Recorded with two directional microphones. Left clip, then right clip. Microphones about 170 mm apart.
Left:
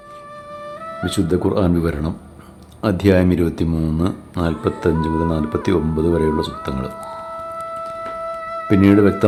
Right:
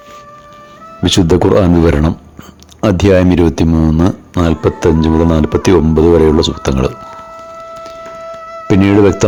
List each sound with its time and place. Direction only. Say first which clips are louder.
1.0 s speech: right 10 dB; 45° right (ahead or behind)
8.2 s music: even; 5° right (ahead or behind)
8.6 s speech: right 5 dB; 45° right (ahead or behind)